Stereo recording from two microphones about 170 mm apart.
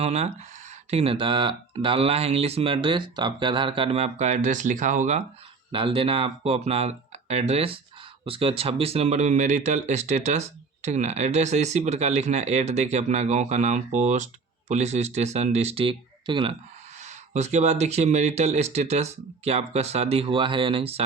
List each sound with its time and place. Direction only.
0.0 s speech: 40° right (ahead or behind)
5.7 s speech: 30° right (ahead or behind)
17.0 s speech: 40° right (ahead or behind)